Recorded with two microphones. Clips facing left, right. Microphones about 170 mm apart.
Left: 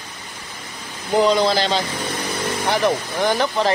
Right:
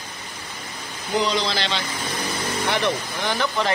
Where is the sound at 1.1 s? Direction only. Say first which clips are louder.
Left 7 dB; 50° left (ahead or behind).